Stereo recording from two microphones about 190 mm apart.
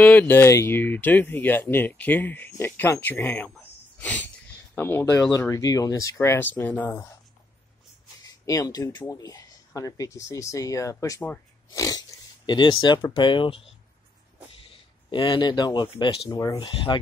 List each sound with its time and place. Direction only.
0.0 s speech: 10° left (ahead or behind)
4.7 s speech: 10° left (ahead or behind)
8.3 s speech: 20° left (ahead or behind)
14.7 s speech: 25° left (ahead or behind)
16.5 s speech: 25° left (ahead or behind)